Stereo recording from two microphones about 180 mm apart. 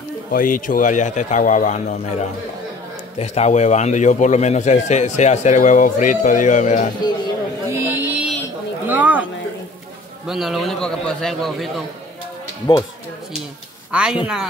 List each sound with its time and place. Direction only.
0.3 s speech: 50° left (ahead or behind)
3.2 s a man's voice: 35° left (ahead or behind)
7.7 s a sound: 10° right (ahead or behind)
10.2 s a man's voice: centre (ahead or behind)
13.9 s a man's voice: 5° right (ahead or behind)